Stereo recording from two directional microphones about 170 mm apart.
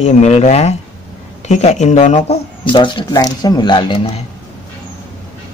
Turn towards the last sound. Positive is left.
turn(degrees=30)  # may be behind; listen again after turning